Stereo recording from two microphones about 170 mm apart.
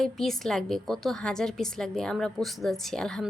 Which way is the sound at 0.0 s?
Centre (ahead or behind).